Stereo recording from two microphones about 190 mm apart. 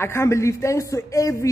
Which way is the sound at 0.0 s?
15° left (ahead or behind).